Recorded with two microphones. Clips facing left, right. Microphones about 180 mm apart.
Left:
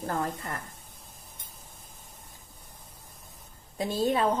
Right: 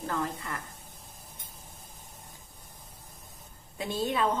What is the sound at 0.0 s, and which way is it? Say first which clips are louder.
Speech: left 2 dB; 45° left (ahead or behind).